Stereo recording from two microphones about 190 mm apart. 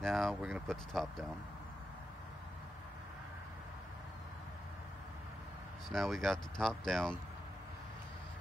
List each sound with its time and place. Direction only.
0.0 s speech: centre (ahead or behind)
5.9 s speech: centre (ahead or behind)